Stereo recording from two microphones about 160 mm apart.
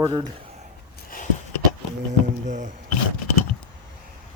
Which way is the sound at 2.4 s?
50° right (ahead or behind).